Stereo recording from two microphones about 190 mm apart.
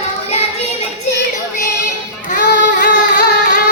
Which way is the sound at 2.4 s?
50° left (ahead or behind).